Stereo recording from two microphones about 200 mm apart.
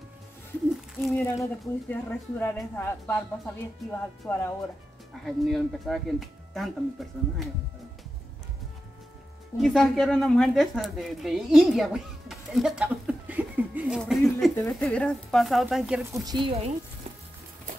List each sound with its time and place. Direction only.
0.9 s speech: centre (ahead or behind)
4.3 s speech: 10° left (ahead or behind)
9.6 s a woman's voice: centre (ahead or behind)
16.1 s speech: 20° right (ahead or behind)